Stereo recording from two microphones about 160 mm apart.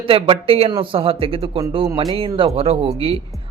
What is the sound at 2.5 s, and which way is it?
Speech, 40° right (ahead or behind).